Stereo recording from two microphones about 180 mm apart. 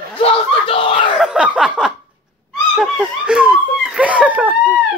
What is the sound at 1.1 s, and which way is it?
Speech, 5° right (ahead or behind).